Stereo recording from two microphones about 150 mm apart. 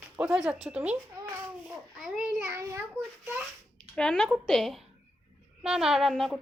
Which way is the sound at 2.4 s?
20° right (ahead or behind).